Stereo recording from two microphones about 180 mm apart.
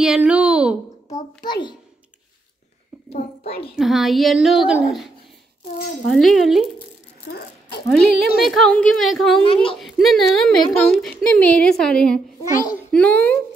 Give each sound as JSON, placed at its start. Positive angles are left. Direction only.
{"t": 0.0, "sound": "a sound", "side_deg": -5}
{"t": 1.4, "sound": "speech", "side_deg": 25}
{"t": 3.1, "sound": "a child's voice", "side_deg": 35}
{"t": 3.7, "sound": "a woman's voice", "side_deg": 0}
{"t": 7.3, "sound": "speech", "side_deg": 55}
{"t": 7.9, "sound": "a woman's voice", "side_deg": 0}
{"t": 9.4, "sound": "speech", "side_deg": 30}
{"t": 9.8, "sound": "a woman's voice", "side_deg": 0}